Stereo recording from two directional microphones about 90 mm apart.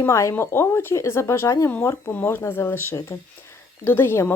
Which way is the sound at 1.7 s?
25° left (ahead or behind).